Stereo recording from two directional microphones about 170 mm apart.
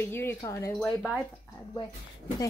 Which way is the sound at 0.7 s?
5° left (ahead or behind).